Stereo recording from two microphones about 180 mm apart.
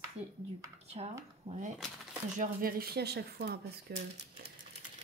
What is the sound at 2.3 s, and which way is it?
Speech, 55° right (ahead or behind).